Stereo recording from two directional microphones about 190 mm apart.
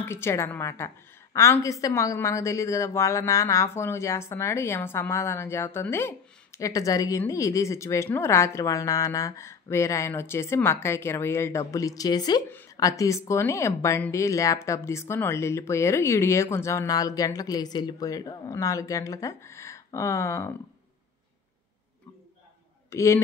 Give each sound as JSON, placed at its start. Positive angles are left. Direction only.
{"t": 0.0, "sound": "a woman's voice", "side_deg": 15}
{"t": 22.8, "sound": "a man's voice", "side_deg": 15}